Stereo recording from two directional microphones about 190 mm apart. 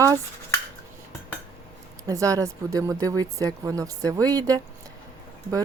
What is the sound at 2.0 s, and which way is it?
Speech, 15° right (ahead or behind).